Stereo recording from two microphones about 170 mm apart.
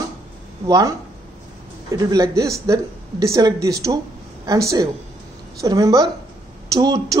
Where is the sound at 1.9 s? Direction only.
20° right (ahead or behind).